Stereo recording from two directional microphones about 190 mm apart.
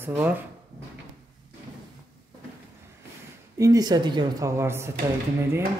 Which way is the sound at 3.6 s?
20° right (ahead or behind).